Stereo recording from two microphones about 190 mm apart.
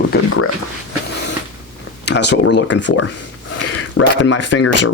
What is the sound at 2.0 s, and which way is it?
Speech, 65° left (ahead or behind).